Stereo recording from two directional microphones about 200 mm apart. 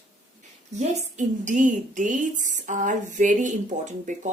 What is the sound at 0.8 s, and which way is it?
A woman's voice, 35° right (ahead or behind).